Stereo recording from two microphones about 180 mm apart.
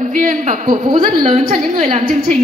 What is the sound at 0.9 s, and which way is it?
Speech, 30° right (ahead or behind).